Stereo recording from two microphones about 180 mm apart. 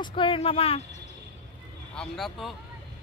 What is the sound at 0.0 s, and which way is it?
Speech, 30° left (ahead or behind).